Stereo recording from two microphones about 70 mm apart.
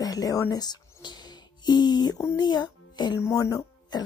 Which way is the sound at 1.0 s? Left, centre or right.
Left.